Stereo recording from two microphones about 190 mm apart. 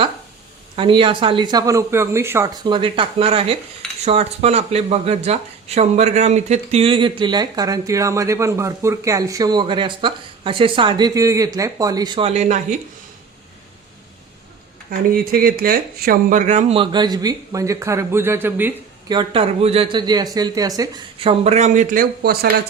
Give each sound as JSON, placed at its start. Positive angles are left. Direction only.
{"t": 0.8, "sound": "speech", "side_deg": -25}
{"t": 2.6, "sound": "speech", "side_deg": -25}
{"t": 14.8, "sound": "speech", "side_deg": -50}
{"t": 16.7, "sound": "a man's voice", "side_deg": -25}
{"t": 19.0, "sound": "speech", "side_deg": -25}